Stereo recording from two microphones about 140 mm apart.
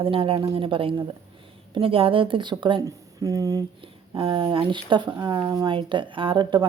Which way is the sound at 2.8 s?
25° right (ahead or behind).